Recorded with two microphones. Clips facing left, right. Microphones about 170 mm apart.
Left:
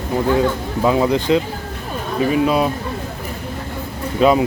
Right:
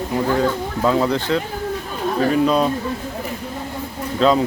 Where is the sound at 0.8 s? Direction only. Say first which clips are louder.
Left 2 dB; 15° left (ahead or behind).